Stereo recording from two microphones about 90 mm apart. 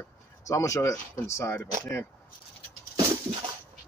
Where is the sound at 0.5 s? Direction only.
35° left (ahead or behind).